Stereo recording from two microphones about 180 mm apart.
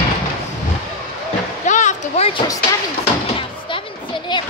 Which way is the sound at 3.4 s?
30° left (ahead or behind).